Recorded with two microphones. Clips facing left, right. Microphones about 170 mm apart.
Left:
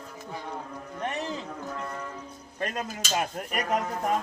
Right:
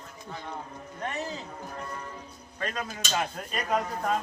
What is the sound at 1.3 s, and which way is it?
Music, 70° left (ahead or behind).